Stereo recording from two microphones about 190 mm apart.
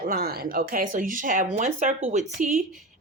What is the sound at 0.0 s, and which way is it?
Speech, 55° right (ahead or behind).